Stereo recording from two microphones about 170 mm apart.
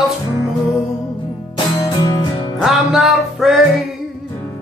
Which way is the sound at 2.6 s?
Centre (ahead or behind).